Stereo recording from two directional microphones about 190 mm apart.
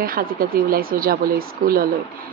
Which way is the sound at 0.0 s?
50° right (ahead or behind).